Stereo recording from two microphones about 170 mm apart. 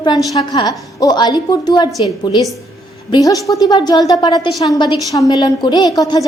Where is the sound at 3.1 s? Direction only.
20° left (ahead or behind).